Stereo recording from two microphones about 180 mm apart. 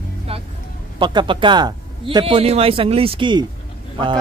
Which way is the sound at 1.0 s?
25° right (ahead or behind).